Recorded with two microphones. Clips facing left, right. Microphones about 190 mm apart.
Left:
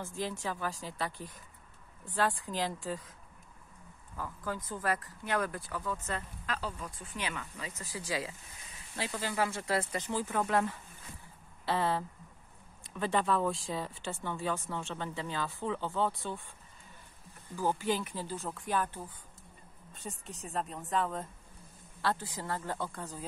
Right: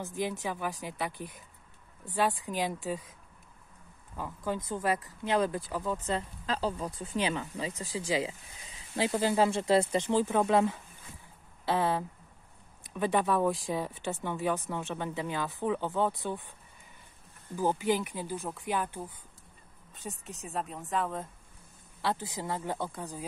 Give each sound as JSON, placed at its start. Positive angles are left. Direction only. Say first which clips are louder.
{"t": 0.0, "sound": "speech", "louder": "right 3 dB", "side_deg": -15}
{"t": 2.1, "sound": "speech", "louder": "right 2 dB", "side_deg": -20}
{"t": 4.2, "sound": "speech", "louder": "right 4 dB", "side_deg": -20}
{"t": 7.7, "sound": "speech", "louder": "right 5 dB", "side_deg": -15}
{"t": 17.6, "sound": "speech", "louder": "right 3 dB", "side_deg": -15}
{"t": 19.9, "sound": "speech", "louder": "right 2 dB", "side_deg": 0}
{"t": 22.0, "sound": "speech", "louder": "right 1 dB", "side_deg": -20}